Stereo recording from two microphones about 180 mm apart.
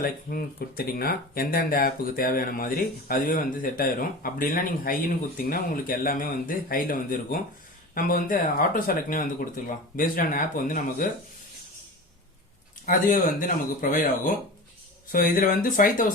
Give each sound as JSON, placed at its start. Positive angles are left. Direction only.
{"t": 0.0, "sound": "speech", "side_deg": 55}
{"t": 12.8, "sound": "speech", "side_deg": 50}